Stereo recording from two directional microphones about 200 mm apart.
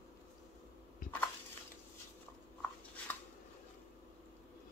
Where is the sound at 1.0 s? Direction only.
45° left (ahead or behind).